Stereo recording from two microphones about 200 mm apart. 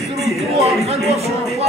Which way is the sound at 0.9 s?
30° right (ahead or behind).